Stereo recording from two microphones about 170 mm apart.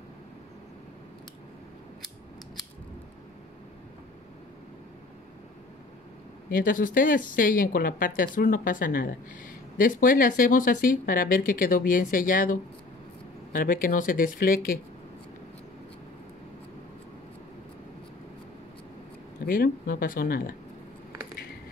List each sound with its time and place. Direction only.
6.5 s speech: 55° left (ahead or behind)
19.4 s speech: 55° left (ahead or behind)